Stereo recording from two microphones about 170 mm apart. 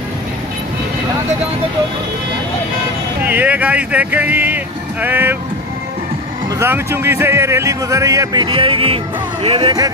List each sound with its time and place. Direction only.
3.3 s speech: 10° right (ahead or behind)
6.6 s speech: 15° right (ahead or behind); by 9.8 s 35° right (ahead or behind)